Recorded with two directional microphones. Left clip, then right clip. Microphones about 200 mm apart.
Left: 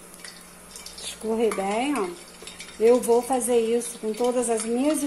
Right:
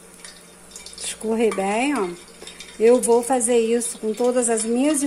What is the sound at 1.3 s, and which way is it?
A woman's voice, 25° right (ahead or behind).